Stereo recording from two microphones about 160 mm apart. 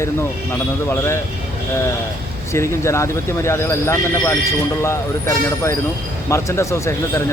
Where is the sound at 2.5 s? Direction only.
15° left (ahead or behind).